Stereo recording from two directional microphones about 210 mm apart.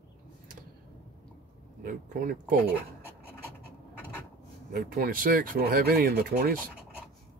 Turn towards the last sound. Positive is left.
turn(degrees=-45)  # may be behind; listen again after turning